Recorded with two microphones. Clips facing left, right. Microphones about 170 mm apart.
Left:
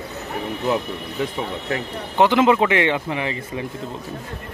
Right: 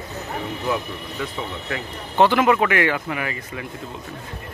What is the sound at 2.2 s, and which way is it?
Speech, 20° left (ahead or behind).